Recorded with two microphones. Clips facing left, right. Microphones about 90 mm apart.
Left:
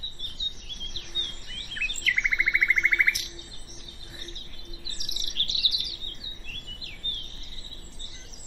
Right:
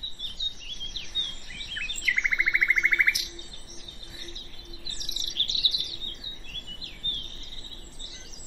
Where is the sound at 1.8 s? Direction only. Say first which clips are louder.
Left 1 dB; 10° right (ahead or behind).